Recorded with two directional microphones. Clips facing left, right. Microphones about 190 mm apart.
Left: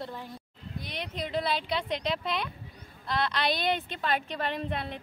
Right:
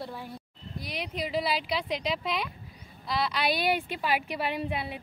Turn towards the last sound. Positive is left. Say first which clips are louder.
# right 1 dB
turn(degrees=-5)  # may be behind; listen again after turning